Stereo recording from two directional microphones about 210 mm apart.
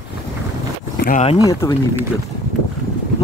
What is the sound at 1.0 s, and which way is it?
Speech, 35° left (ahead or behind).